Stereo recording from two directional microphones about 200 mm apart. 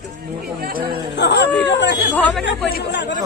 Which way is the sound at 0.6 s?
50° right (ahead or behind).